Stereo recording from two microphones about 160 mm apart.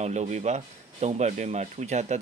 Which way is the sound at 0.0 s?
45° right (ahead or behind).